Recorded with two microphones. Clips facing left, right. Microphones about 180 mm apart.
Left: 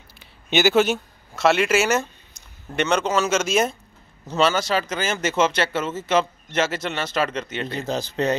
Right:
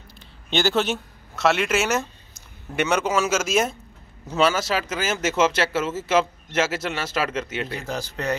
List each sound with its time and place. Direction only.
0.5 s speech: 5° left (ahead or behind)
7.7 s speech: 20° left (ahead or behind)